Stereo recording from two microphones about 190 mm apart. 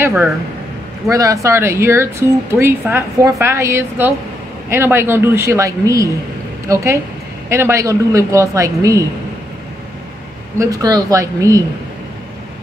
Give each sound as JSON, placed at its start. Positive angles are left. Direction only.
{"t": 0.0, "sound": "speech", "side_deg": -10}
{"t": 10.6, "sound": "speech", "side_deg": -20}